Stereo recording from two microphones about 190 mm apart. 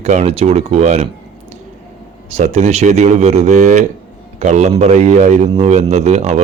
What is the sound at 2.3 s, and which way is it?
Speech, 35° right (ahead or behind).